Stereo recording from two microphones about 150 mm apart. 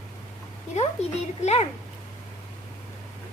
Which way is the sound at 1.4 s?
45° left (ahead or behind).